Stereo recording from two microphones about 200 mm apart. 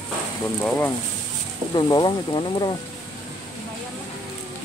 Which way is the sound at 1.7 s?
20° left (ahead or behind).